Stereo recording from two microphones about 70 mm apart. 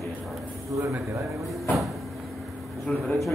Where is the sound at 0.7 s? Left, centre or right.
Right.